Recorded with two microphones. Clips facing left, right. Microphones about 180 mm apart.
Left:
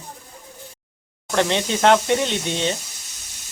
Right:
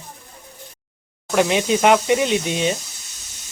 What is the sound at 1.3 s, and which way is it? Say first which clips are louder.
Speech: right 3 dB; 10° right (ahead or behind).